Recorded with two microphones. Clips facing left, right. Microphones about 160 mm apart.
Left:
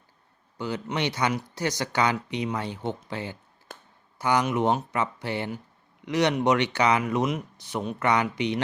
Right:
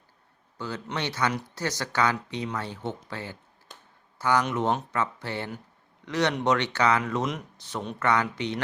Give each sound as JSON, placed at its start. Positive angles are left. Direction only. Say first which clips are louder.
{"t": 0.6, "sound": "speech", "louder": "left 4 dB", "side_deg": 15}